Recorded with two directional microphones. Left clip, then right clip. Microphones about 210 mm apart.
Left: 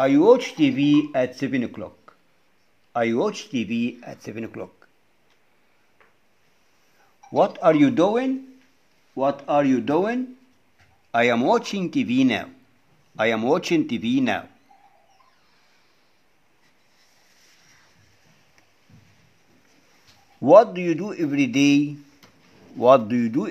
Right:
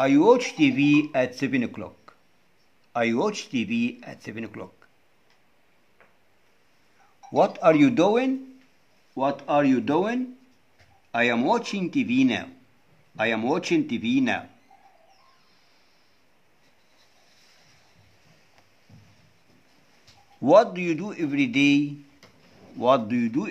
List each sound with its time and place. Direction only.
0.0 s speech: 10° left (ahead or behind)
7.3 s speech: 10° left (ahead or behind); by 14.4 s 30° left (ahead or behind)
20.4 s speech: 20° left (ahead or behind)
22.8 s speech: 30° left (ahead or behind)